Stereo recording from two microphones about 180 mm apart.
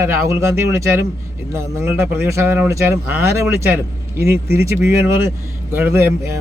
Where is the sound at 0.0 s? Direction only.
15° right (ahead or behind).